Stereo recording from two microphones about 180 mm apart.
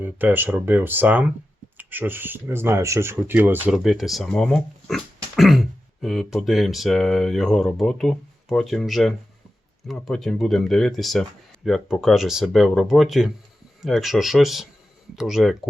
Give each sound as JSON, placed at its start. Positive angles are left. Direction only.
{"t": 0.0, "sound": "speech", "side_deg": -10}